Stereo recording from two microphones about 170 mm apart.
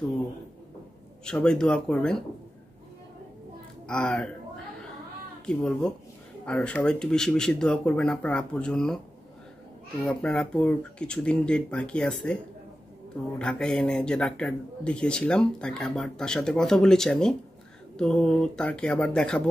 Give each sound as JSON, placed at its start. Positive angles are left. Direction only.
{"t": 1.2, "sound": "speech", "side_deg": 5}
{"t": 3.8, "sound": "speech", "side_deg": 5}
{"t": 5.4, "sound": "speech", "side_deg": 5}
{"t": 10.0, "sound": "speech", "side_deg": 5}
{"t": 13.4, "sound": "speech", "side_deg": 5}